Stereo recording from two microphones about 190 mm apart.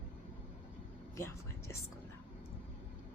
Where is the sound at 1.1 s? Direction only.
15° left (ahead or behind).